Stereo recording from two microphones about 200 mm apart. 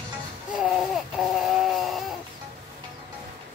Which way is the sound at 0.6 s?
5° right (ahead or behind).